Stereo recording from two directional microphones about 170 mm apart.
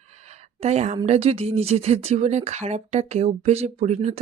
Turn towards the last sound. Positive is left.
turn(degrees=-40)  # may be behind; listen again after turning